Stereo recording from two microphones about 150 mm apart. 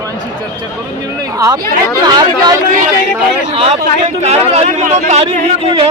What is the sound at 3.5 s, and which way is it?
Speech, 40° right (ahead or behind).